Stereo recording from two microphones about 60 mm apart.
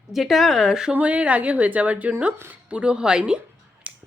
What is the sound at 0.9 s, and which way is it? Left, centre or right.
A woman's voice, right.